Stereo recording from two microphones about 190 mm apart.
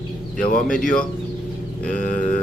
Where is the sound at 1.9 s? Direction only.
40° left (ahead or behind).